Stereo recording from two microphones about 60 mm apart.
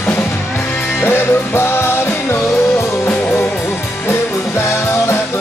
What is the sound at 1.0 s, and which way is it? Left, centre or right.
Music, left.